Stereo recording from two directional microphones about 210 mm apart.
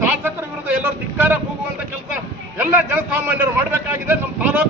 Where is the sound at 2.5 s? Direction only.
10° right (ahead or behind).